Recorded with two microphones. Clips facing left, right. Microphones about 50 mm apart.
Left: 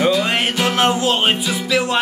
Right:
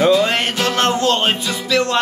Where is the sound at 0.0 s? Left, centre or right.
Centre.